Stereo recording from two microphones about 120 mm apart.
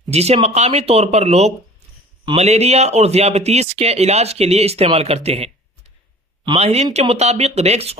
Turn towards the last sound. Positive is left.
turn(degrees=-60)  # may be behind; listen again after turning